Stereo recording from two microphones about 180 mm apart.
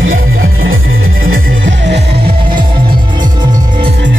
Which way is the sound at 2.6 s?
25° right (ahead or behind).